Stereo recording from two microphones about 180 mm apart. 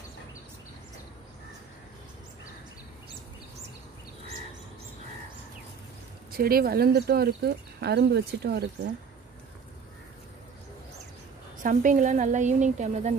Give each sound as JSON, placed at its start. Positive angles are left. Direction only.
{"t": 6.3, "sound": "speech", "side_deg": -55}
{"t": 11.6, "sound": "a woman's voice", "side_deg": -45}